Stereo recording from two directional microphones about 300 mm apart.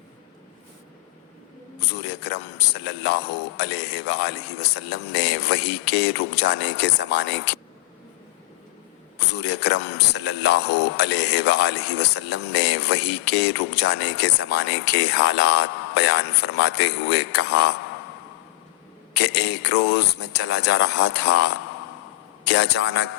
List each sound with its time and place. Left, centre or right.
2.0 s speech: left
9.3 s speech: left
19.2 s speech: left
22.5 s speech: left